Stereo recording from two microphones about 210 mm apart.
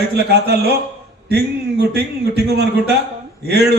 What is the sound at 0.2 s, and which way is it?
Speech, 50° right (ahead or behind).